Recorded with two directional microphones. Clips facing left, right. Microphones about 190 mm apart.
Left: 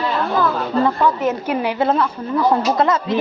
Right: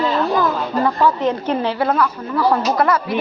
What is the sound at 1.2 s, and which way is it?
Speech, 10° left (ahead or behind).